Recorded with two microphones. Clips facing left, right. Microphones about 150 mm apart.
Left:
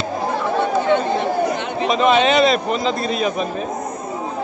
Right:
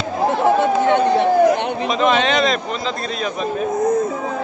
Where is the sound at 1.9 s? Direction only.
5° left (ahead or behind).